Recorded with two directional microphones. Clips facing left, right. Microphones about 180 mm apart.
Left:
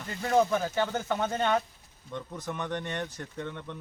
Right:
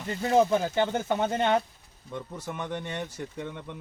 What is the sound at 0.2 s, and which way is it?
Speech, 25° right (ahead or behind).